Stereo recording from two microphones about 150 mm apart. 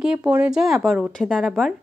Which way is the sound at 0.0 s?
10° right (ahead or behind).